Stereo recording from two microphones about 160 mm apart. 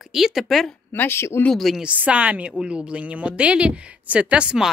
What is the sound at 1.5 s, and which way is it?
A woman's voice, centre (ahead or behind).